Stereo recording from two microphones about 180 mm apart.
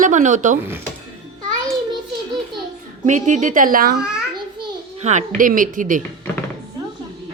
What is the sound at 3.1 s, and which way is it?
Speech, 40° right (ahead or behind).